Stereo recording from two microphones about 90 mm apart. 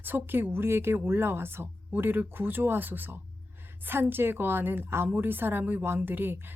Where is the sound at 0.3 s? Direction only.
25° right (ahead or behind).